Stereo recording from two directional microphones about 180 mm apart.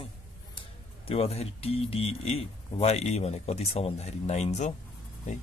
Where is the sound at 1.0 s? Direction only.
35° left (ahead or behind).